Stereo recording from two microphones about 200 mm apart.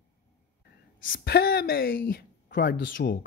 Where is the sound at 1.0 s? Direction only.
50° left (ahead or behind).